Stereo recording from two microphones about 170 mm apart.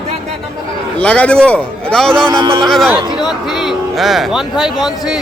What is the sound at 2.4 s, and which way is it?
Speech, 25° right (ahead or behind).